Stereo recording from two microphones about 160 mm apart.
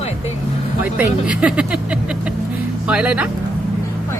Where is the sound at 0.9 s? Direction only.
5° right (ahead or behind).